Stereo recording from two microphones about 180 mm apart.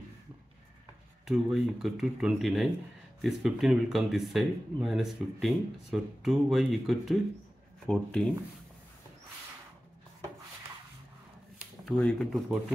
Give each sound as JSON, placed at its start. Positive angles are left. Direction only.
{"t": 1.2, "sound": "speech", "side_deg": -5}
{"t": 11.5, "sound": "speech", "side_deg": 5}